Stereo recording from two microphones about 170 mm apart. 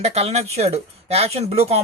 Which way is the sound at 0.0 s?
40° right (ahead or behind).